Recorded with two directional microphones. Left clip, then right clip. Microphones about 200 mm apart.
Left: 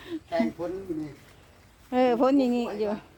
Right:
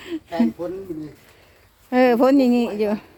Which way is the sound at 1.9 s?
25° right (ahead or behind).